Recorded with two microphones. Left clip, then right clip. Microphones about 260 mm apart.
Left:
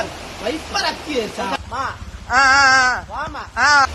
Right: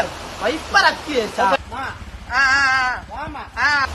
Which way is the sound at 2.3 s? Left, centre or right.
Centre.